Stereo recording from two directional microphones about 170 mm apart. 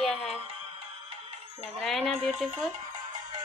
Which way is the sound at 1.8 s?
Centre (ahead or behind).